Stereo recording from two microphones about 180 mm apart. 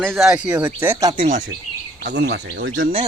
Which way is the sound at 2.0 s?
70° right (ahead or behind).